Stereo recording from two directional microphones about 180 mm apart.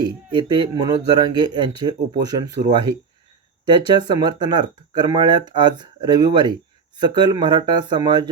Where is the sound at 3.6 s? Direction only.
25° right (ahead or behind).